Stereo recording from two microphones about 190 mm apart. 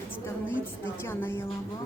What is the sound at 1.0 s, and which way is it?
Speech, 10° left (ahead or behind).